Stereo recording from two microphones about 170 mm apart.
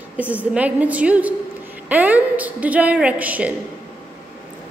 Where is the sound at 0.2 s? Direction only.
10° right (ahead or behind).